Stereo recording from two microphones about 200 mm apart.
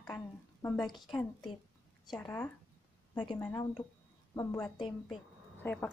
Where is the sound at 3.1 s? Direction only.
25° left (ahead or behind).